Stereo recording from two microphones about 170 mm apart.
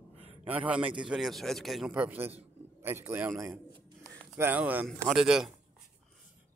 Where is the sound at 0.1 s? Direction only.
35° right (ahead or behind).